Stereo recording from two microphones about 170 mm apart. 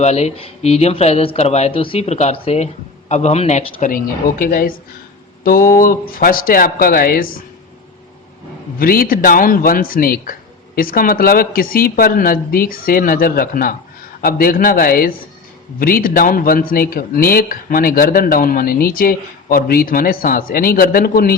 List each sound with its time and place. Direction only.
0.0 s speech: 40° left (ahead or behind); by 7.4 s 60° left (ahead or behind)
8.8 s speech: 60° left (ahead or behind)